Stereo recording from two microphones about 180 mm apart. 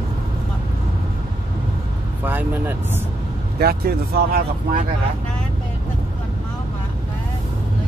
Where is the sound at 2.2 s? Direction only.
10° right (ahead or behind).